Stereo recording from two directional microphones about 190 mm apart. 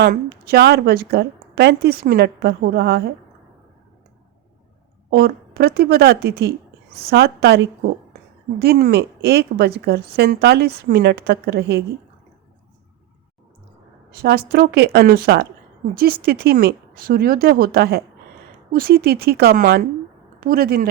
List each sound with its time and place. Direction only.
0.0 s speech: 55° right (ahead or behind)
5.1 s speech: 55° right (ahead or behind)
14.2 s speech: 55° right (ahead or behind)